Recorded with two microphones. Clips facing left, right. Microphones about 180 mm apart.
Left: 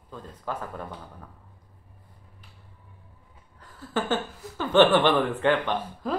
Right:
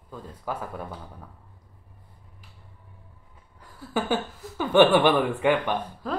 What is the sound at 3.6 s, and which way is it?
Speech, 10° right (ahead or behind).